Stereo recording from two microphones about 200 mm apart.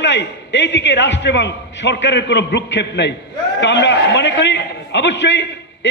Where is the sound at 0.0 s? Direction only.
60° left (ahead or behind).